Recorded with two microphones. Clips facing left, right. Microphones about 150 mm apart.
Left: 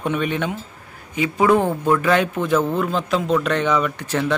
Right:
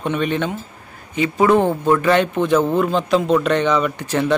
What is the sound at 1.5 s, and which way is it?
Speech, 20° right (ahead or behind).